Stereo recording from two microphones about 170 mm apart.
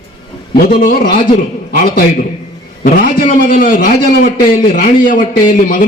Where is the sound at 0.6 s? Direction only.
55° left (ahead or behind).